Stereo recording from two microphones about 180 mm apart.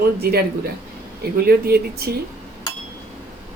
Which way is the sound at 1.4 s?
60° right (ahead or behind).